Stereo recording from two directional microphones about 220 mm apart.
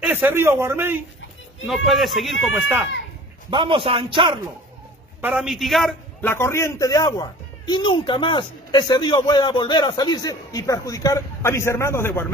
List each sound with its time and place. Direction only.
0.0 s a man's voice: 5° right (ahead or behind)
3.4 s a man's voice: 20° right (ahead or behind)
5.2 s a man's voice: 5° right (ahead or behind)